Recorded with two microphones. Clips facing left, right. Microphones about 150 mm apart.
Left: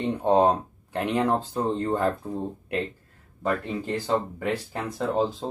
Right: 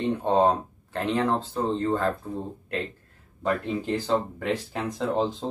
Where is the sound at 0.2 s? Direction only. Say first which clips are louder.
Left 3 dB; 15° left (ahead or behind).